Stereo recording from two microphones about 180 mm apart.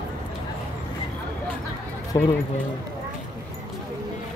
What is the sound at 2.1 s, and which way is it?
Speech, 20° left (ahead or behind).